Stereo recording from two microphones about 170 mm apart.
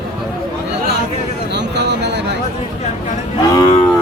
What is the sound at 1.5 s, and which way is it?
Speech, 90° right.